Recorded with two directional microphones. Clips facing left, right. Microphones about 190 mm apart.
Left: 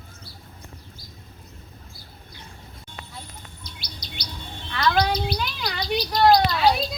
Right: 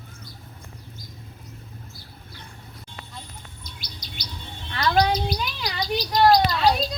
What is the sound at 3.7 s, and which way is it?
Chirp, 50° right (ahead or behind).